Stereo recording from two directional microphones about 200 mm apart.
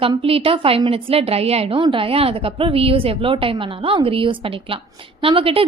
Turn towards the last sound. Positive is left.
turn(degrees=-25)  # may be behind; listen again after turning